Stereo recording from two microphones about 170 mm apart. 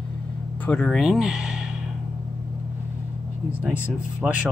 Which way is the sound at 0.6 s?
5° left (ahead or behind).